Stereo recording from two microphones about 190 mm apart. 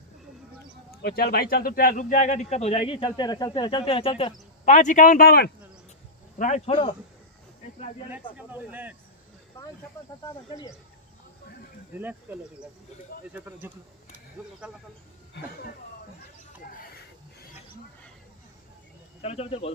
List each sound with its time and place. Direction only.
1.0 s speech: 55° left (ahead or behind); by 4.3 s 30° left (ahead or behind)
4.6 s speech: 40° left (ahead or behind)
6.3 s speech: 40° left (ahead or behind)
8.4 s speech: 10° right (ahead or behind)
12.0 s speech: 10° right (ahead or behind)
19.2 s speech: 30° left (ahead or behind)